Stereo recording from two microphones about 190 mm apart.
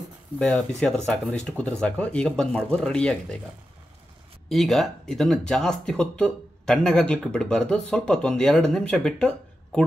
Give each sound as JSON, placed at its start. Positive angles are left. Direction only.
{"t": 0.4, "sound": "speech", "side_deg": 5}
{"t": 4.5, "sound": "speech", "side_deg": 0}